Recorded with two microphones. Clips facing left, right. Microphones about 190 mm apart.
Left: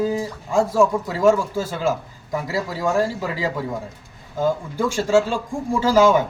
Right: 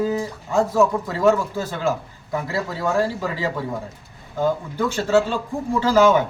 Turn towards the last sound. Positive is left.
turn(degrees=10)  # may be behind; listen again after turning